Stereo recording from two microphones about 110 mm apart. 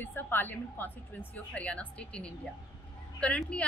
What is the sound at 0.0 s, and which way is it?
A woman's voice, 20° left (ahead or behind).